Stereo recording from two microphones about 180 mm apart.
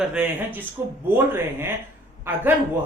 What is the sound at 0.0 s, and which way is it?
Speech, 5° right (ahead or behind).